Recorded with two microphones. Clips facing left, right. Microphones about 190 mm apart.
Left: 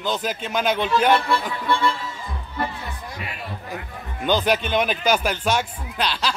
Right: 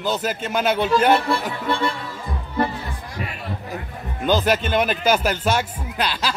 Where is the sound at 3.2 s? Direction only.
40° right (ahead or behind).